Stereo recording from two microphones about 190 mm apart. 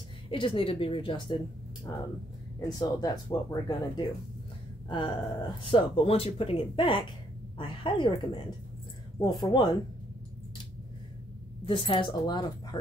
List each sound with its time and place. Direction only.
0.3 s speech: 30° left (ahead or behind)
2.6 s speech: 20° left (ahead or behind)
4.8 s gasp: 25° left (ahead or behind)
5.6 s speech: 25° left (ahead or behind)
11.6 s speech: 25° left (ahead or behind)